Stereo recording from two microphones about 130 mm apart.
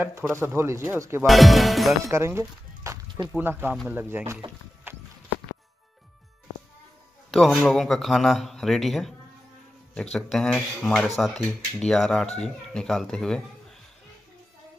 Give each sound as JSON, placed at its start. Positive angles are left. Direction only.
{"t": 0.0, "sound": "a man's voice", "side_deg": -15}
{"t": 1.2, "sound": "speech", "side_deg": 0}
{"t": 2.0, "sound": "speech", "side_deg": -20}
{"t": 7.2, "sound": "speech", "side_deg": 0}
{"t": 10.1, "sound": "speech", "side_deg": 5}